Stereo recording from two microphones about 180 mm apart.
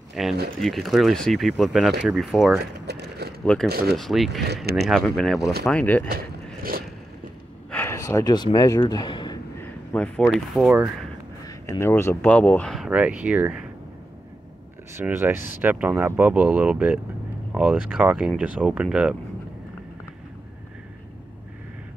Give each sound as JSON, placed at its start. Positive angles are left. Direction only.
{"t": 0.1, "sound": "speech", "side_deg": 0}
{"t": 2.6, "sound": "a sound", "side_deg": -65}
{"t": 3.9, "sound": "speech", "side_deg": 0}
{"t": 6.0, "sound": "a sound", "side_deg": -55}
{"t": 7.7, "sound": "speech", "side_deg": 15}
{"t": 9.6, "sound": "speech", "side_deg": 5}
{"t": 11.4, "sound": "speech", "side_deg": 20}
{"t": 15.0, "sound": "speech", "side_deg": -10}